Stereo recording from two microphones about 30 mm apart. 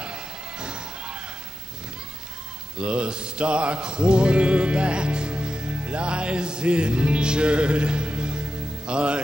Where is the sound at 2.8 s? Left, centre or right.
Right.